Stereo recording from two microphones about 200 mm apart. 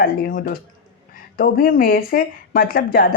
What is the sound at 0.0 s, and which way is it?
Speech, 45° left (ahead or behind).